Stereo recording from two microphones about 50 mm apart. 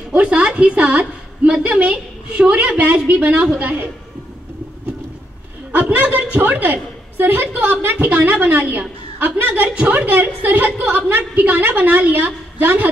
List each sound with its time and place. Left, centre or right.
0.2 s a woman's voice: right
5.7 s a woman's voice: right